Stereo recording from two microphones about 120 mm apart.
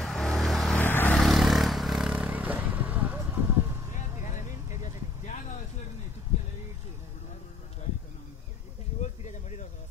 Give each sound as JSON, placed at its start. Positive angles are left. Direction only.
{"t": 0.0, "sound": "vehicle", "side_deg": 0}
{"t": 0.7, "sound": "vehicle", "side_deg": 15}
{"t": 1.1, "sound": "vehicle", "side_deg": 0}
{"t": 3.9, "sound": "vehicle", "side_deg": 85}
{"t": 9.0, "sound": "a sound", "side_deg": 75}